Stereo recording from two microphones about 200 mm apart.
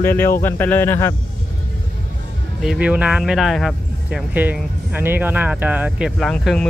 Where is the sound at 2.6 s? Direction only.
5° right (ahead or behind).